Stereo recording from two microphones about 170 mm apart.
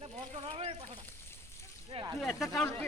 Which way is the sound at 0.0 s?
35° right (ahead or behind).